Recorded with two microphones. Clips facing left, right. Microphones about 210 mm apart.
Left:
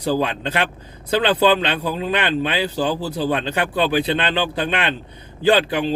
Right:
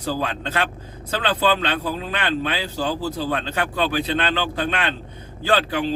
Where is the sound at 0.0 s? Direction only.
15° left (ahead or behind).